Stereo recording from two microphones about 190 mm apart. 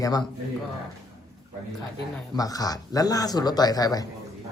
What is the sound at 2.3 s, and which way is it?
A man's voice, 20° left (ahead or behind).